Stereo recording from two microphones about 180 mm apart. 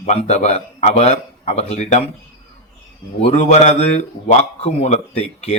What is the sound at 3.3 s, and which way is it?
A man's voice, 40° left (ahead or behind).